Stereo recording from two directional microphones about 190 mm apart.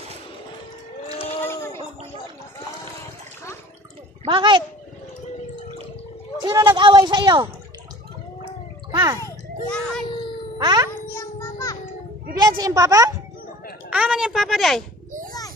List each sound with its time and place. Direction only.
1.4 s a sound: 15° left (ahead or behind)
4.2 s a child's voice: 25° right (ahead or behind)
6.4 s a sound: 20° right (ahead or behind)
8.9 s gargling: 20° right (ahead or behind)
9.2 s children playing: 5° left (ahead or behind)
10.6 s music: 20° right (ahead or behind)
11.1 s child singing: 15° left (ahead or behind)
12.5 s speech: 15° right (ahead or behind)
13.8 s a sound: 5° right (ahead or behind)